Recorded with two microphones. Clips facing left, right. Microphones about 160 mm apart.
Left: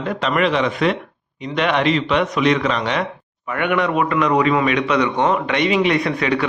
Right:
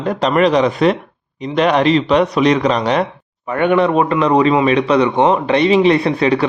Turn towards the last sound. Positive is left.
turn(degrees=-30)  # may be behind; listen again after turning